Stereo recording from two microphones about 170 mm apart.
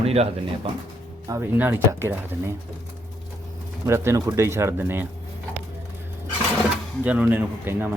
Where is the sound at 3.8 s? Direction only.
15° right (ahead or behind).